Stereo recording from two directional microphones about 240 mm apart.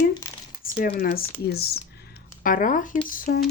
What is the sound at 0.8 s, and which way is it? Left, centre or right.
Speech, left.